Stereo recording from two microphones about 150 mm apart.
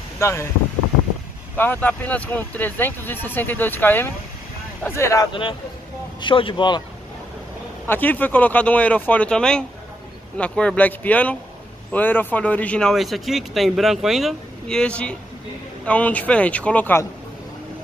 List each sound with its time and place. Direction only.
0.2 s speech: 20° left (ahead or behind)
1.6 s speech: 10° left (ahead or behind)
5.3 s speech: 35° left (ahead or behind)
7.8 s a man's voice: 10° left (ahead or behind)